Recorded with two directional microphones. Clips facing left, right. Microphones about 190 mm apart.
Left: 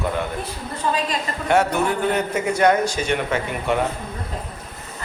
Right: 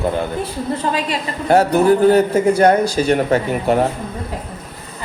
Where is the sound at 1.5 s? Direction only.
35° right (ahead or behind).